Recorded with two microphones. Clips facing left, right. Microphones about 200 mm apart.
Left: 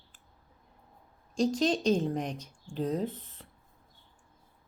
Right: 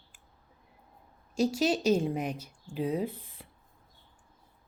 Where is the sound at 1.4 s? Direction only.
10° right (ahead or behind).